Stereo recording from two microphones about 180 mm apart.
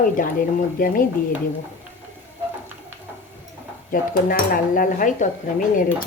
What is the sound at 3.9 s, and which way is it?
Speech, 50° left (ahead or behind).